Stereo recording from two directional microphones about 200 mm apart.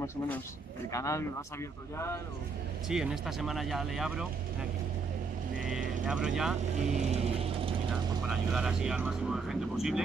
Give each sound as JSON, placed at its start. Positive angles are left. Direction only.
{"t": 0.9, "sound": "speech", "side_deg": 15}
{"t": 2.9, "sound": "speech", "side_deg": -5}
{"t": 5.6, "sound": "vehicle", "side_deg": -5}
{"t": 6.0, "sound": "speech", "side_deg": -5}
{"t": 6.8, "sound": "mechanisms", "side_deg": -35}
{"t": 8.3, "sound": "speech", "side_deg": -5}